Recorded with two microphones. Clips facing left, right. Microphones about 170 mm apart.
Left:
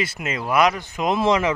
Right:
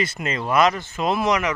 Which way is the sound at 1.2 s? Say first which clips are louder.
Left 4 dB; 25° left (ahead or behind).